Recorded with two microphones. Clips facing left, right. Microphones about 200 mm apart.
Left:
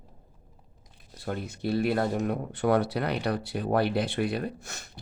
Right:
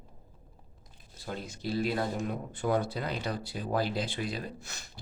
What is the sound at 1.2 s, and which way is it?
Speech, 55° left (ahead or behind).